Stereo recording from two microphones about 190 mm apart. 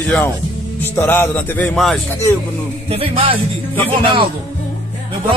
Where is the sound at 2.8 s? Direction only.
30° right (ahead or behind).